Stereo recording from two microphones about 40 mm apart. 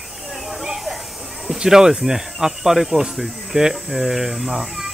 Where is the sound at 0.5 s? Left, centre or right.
Centre.